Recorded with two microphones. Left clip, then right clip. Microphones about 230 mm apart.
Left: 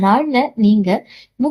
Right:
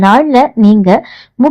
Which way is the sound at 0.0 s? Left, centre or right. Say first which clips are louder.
Right 8 dB; right.